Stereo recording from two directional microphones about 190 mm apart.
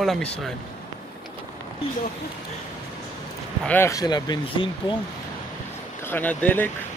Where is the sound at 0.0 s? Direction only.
Centre (ahead or behind).